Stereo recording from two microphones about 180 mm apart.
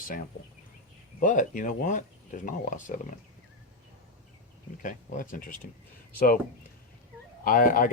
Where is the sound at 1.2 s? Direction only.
45° left (ahead or behind).